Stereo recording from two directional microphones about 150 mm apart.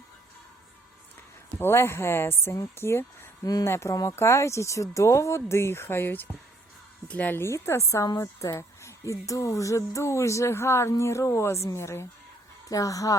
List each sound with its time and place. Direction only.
1.5 s speech: 15° left (ahead or behind)